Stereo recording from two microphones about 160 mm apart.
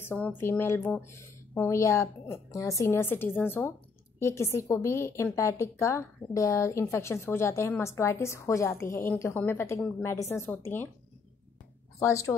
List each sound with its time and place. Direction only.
0.0 s a woman's voice: 10° left (ahead or behind)
12.0 s a woman's voice: 20° left (ahead or behind)